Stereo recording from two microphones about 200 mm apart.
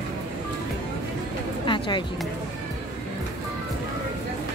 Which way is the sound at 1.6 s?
25° left (ahead or behind).